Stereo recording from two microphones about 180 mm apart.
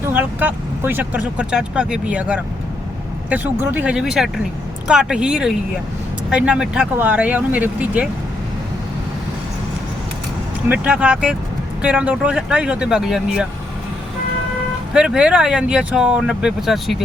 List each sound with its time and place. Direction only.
0.1 s speech: 10° right (ahead or behind)
10.7 s speech: 5° right (ahead or behind)
14.9 s speech: 5° right (ahead or behind)